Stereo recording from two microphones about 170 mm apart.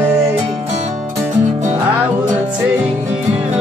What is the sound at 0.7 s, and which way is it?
Music, 45° right (ahead or behind).